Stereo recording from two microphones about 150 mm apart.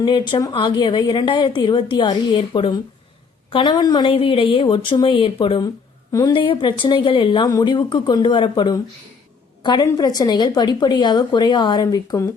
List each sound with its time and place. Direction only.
0.0 s a woman's voice: 30° left (ahead or behind)